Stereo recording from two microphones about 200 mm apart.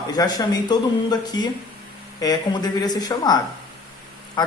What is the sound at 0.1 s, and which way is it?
Speech, 20° left (ahead or behind).